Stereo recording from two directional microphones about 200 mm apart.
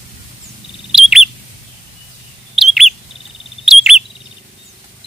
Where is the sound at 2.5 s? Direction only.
Centre (ahead or behind).